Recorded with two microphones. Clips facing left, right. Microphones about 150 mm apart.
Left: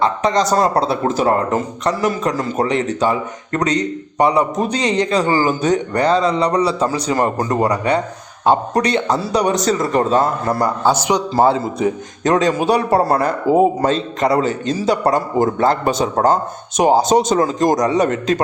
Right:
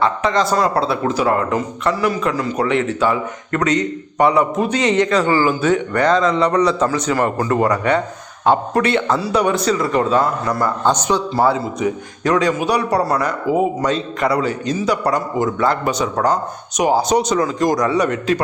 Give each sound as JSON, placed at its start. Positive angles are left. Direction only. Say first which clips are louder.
{"t": 0.2, "sound": "a man's voice", "louder": "left 1 dB", "side_deg": 35}
{"t": 6.7, "sound": "a man's voice", "louder": "right 1 dB", "side_deg": 10}
{"t": 6.9, "sound": "a man's voice", "louder": "even", "side_deg": 25}
{"t": 10.8, "sound": "a man's voice", "louder": "left 1 dB", "side_deg": 10}
{"t": 11.3, "sound": "a man's voice", "louder": "left 4 dB", "side_deg": 25}
{"t": 15.4, "sound": "a man's voice", "louder": "left 3 dB", "side_deg": 45}
{"t": 15.6, "sound": "a man's voice", "louder": "left 2 dB", "side_deg": 25}